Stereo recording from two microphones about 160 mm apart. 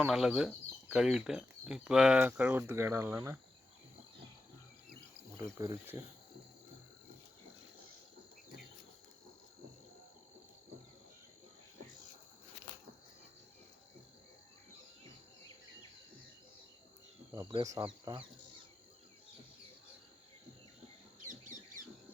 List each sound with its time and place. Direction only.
0.0 s speech: 5° right (ahead or behind)
5.5 s speech: 20° right (ahead or behind)
17.5 s speech: 25° right (ahead or behind)